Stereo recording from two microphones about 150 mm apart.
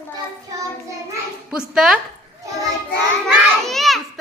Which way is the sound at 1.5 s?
5° right (ahead or behind).